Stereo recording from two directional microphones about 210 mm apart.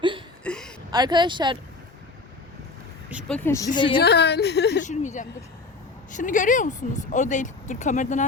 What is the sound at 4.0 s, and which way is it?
Speech, 50° left (ahead or behind).